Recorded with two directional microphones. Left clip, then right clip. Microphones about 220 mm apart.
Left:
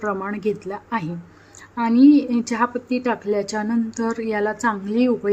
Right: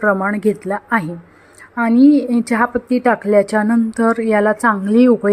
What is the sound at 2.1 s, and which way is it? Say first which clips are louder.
A woman's voice: right 3 dB; 15° right (ahead or behind).